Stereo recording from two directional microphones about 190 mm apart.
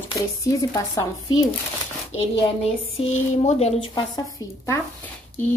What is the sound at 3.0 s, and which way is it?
Speech, 30° left (ahead or behind).